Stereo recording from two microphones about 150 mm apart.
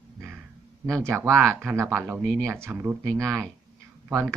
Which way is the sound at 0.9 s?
20° right (ahead or behind).